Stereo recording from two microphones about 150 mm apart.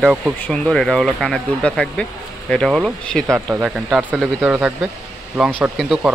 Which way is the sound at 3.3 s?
15° right (ahead or behind).